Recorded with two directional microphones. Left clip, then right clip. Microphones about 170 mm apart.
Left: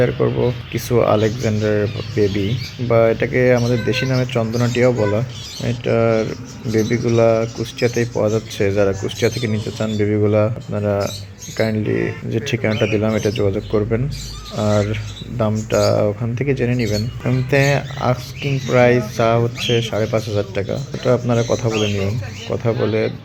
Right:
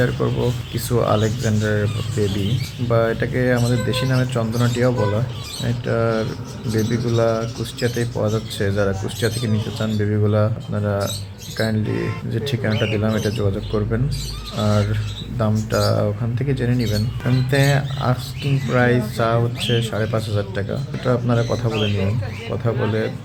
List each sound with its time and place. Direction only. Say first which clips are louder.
0.0 s speech: left 4 dB; 10° left (ahead or behind)
12.3 s speech: left 3 dB; 10° left (ahead or behind)